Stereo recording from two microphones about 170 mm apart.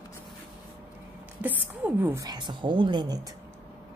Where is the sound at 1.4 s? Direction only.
10° right (ahead or behind); by 3.2 s 25° right (ahead or behind).